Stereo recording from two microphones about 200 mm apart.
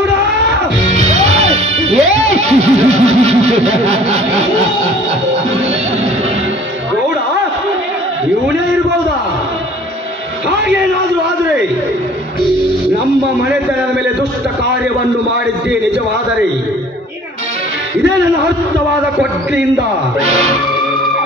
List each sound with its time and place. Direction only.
1.2 s music: 35° right (ahead or behind)
20.2 s speech: 35° right (ahead or behind)